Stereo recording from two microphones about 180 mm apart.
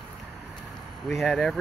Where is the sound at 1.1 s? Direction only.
Centre (ahead or behind).